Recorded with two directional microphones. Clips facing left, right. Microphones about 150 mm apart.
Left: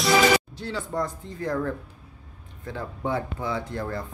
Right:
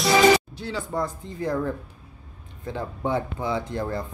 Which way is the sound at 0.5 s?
10° right (ahead or behind).